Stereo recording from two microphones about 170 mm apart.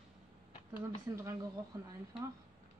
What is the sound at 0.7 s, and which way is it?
Speech, 15° right (ahead or behind).